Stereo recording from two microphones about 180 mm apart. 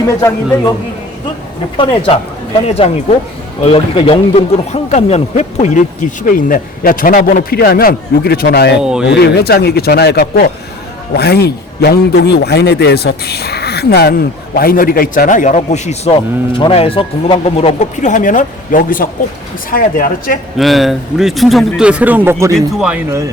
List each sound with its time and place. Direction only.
0.2 s a man's voice: 15° left (ahead or behind)
1.7 s speech: 30° left (ahead or behind); by 8.7 s 60° left (ahead or behind)
8.8 s speech: 5° right (ahead or behind)
9.0 s speech: 65° left (ahead or behind); by 20.4 s 50° left (ahead or behind)
20.6 s speech: centre (ahead or behind)
22.5 s speech: 5° right (ahead or behind)
23.0 s speech: 15° right (ahead or behind)